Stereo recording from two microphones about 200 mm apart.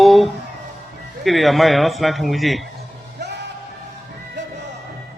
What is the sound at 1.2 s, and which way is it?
A man's voice, centre (ahead or behind).